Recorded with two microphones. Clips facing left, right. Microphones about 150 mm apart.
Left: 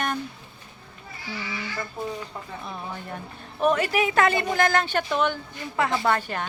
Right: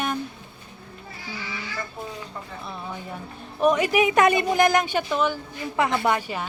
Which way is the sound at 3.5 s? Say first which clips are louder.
Right 2 dB; 10° right (ahead or behind).